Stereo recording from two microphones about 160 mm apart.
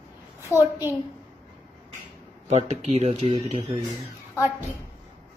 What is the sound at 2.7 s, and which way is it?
Mantra, 45° right (ahead or behind).